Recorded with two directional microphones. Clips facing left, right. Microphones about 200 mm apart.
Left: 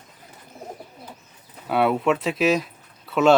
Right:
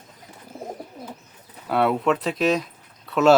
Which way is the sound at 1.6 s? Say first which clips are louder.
Even; centre (ahead or behind).